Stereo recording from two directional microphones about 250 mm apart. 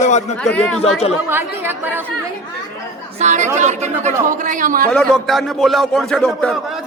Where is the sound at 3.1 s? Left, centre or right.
Right.